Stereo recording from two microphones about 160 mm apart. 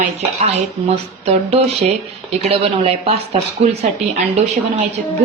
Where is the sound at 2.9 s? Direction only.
40° right (ahead or behind).